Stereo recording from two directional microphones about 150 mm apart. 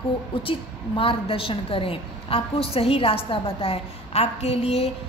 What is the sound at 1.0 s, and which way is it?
A woman's voice, 35° left (ahead or behind).